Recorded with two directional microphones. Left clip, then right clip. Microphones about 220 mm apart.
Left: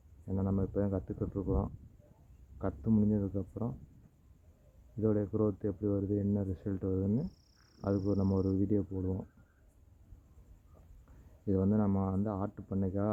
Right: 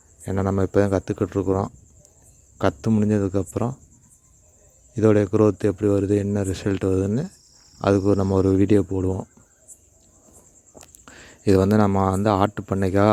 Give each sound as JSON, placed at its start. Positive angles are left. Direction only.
{"t": 0.3, "sound": "speech", "side_deg": -55}
{"t": 4.9, "sound": "speech", "side_deg": -50}
{"t": 11.4, "sound": "speech", "side_deg": -50}